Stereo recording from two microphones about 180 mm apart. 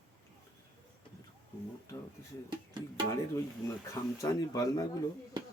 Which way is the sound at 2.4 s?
25° right (ahead or behind).